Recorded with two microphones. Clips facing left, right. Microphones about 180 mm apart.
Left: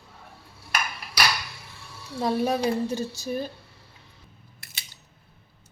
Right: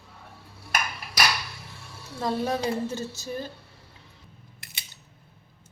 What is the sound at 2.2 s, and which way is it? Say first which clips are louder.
Speech: left 3 dB; 15° left (ahead or behind).